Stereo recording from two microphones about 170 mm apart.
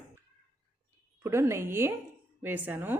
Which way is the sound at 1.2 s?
15° right (ahead or behind).